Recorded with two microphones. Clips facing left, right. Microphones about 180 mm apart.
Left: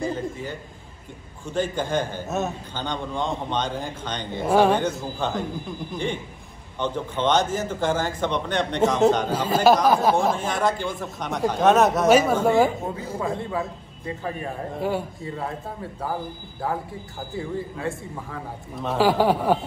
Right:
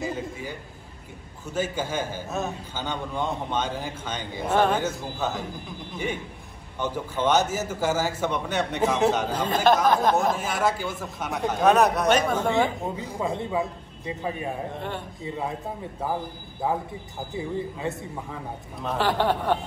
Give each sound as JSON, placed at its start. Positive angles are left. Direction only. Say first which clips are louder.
{"t": 0.0, "sound": "a sound", "louder": "left 3 dB", "side_deg": -10}
{"t": 1.4, "sound": "a man's voice", "louder": "left 2 dB", "side_deg": -5}
{"t": 4.4, "sound": "speech", "louder": "left 4 dB", "side_deg": 10}
{"t": 4.7, "sound": "a man's voice", "louder": "left 3 dB", "side_deg": -5}
{"t": 6.8, "sound": "a man's voice", "louder": "left 1 dB", "side_deg": -10}
{"t": 9.3, "sound": "speech", "louder": "left 3 dB", "side_deg": 5}
{"t": 10.3, "sound": "a man's voice", "louder": "left 2 dB", "side_deg": -5}
{"t": 12.9, "sound": "a man's voice", "louder": "left 1 dB", "side_deg": -20}
{"t": 14.8, "sound": "speech", "louder": "left 7 dB", "side_deg": 5}
{"t": 15.2, "sound": "a man's voice", "louder": "even", "side_deg": -15}
{"t": 18.8, "sound": "speech", "louder": "left 5 dB", "side_deg": 5}